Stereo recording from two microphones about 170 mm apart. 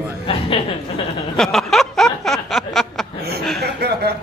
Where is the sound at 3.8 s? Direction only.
70° right (ahead or behind).